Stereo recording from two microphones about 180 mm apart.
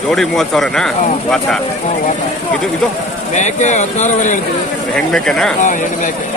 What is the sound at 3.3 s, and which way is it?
Speech, 40° left (ahead or behind).